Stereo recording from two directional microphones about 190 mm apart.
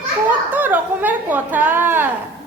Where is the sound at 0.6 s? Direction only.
10° right (ahead or behind).